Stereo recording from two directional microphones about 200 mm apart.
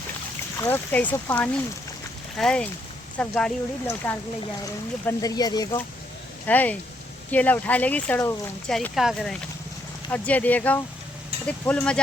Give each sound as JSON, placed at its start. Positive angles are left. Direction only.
{"t": 0.6, "sound": "speech", "side_deg": 10}
{"t": 6.4, "sound": "speech", "side_deg": 10}